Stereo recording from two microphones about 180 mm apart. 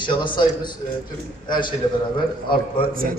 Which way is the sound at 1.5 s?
25° left (ahead or behind).